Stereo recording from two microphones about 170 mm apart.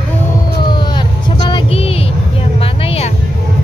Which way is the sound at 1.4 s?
30° left (ahead or behind).